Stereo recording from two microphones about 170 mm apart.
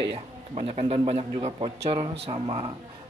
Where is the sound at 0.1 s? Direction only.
35° right (ahead or behind).